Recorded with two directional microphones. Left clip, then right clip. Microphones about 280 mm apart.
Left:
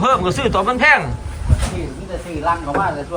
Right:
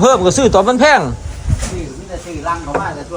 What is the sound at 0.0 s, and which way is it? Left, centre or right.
Speech, centre.